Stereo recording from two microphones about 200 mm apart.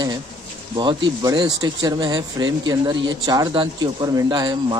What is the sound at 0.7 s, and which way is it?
Speech, 20° right (ahead or behind).